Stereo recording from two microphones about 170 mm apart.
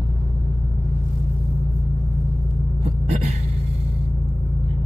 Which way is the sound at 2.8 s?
40° right (ahead or behind).